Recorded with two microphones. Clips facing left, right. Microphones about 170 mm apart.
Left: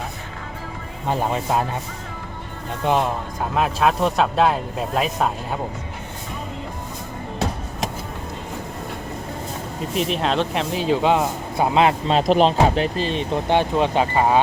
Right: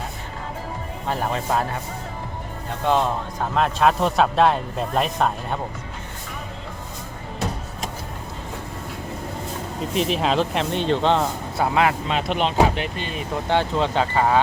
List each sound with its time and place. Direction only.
1.0 s speech: 15° left (ahead or behind)
2.8 s speech: 15° left (ahead or behind)
3.5 s speech: 5° left (ahead or behind)
9.9 s speech: centre (ahead or behind); by 14.3 s 15° left (ahead or behind)